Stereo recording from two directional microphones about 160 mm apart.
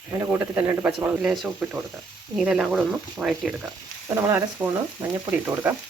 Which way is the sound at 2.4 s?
5° right (ahead or behind).